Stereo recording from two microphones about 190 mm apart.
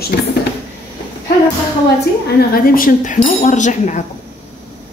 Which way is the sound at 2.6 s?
50° left (ahead or behind).